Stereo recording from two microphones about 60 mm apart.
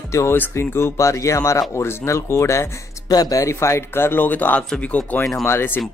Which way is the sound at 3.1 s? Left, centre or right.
Left.